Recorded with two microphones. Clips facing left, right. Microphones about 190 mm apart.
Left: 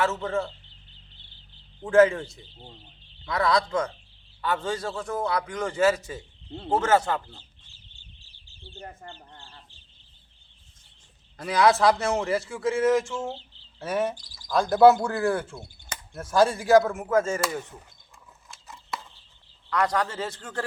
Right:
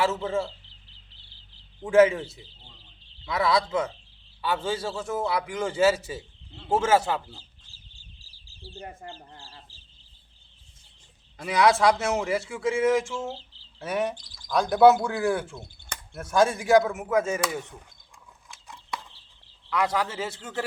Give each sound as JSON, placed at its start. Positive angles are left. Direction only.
{"t": 0.0, "sound": "a man's voice", "side_deg": -10}
{"t": 1.8, "sound": "a man's voice", "side_deg": -5}
{"t": 9.4, "sound": "bird", "side_deg": -35}
{"t": 11.3, "sound": "speech", "side_deg": 0}
{"t": 18.4, "sound": "a sound", "side_deg": 0}
{"t": 19.7, "sound": "speech", "side_deg": -5}